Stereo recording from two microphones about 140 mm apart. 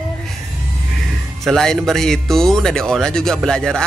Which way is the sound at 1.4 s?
5° left (ahead or behind).